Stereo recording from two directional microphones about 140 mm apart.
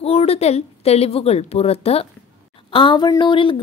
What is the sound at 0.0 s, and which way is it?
A woman's voice, 45° left (ahead or behind).